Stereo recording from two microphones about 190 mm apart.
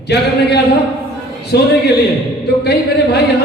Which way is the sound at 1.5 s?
60° left (ahead or behind).